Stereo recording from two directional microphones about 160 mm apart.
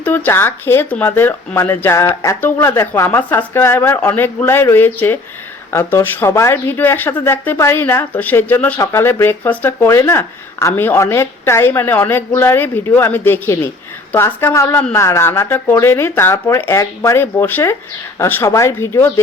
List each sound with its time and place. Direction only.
0.0 s speech: 10° left (ahead or behind)